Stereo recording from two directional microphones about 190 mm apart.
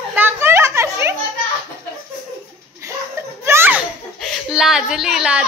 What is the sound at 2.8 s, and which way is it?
Laughter, 15° right (ahead or behind).